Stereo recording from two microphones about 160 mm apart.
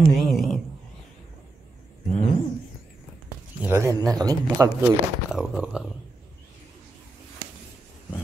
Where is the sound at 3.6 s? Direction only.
15° right (ahead or behind).